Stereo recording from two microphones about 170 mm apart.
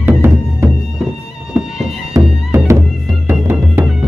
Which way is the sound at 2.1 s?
15° right (ahead or behind).